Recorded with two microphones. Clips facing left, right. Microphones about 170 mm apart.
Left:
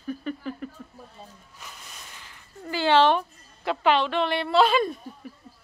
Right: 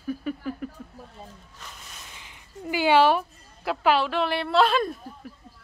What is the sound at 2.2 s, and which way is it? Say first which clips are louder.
A woman's voice: right 4 dB; 15° right (ahead or behind).